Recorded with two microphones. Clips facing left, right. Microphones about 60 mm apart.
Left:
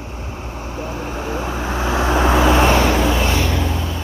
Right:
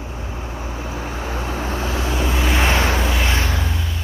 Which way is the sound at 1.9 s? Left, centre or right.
Left.